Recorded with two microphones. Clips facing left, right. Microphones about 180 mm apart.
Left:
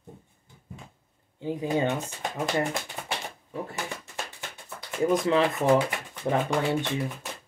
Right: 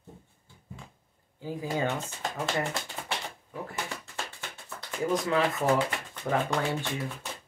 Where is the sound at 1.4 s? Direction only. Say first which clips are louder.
Left 4 dB; 20° left (ahead or behind).